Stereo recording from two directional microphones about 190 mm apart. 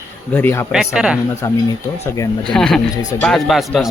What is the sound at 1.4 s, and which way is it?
Speech, 15° left (ahead or behind).